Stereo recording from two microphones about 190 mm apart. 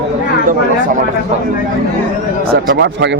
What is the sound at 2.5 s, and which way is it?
Speech, 60° right (ahead or behind).